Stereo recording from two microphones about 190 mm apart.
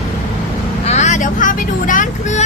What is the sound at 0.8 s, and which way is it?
Speech, 35° left (ahead or behind).